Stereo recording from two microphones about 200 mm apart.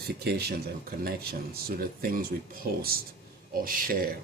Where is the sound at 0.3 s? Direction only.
50° right (ahead or behind).